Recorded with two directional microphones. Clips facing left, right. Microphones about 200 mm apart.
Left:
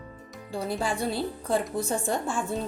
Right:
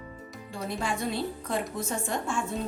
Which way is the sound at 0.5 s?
35° left (ahead or behind).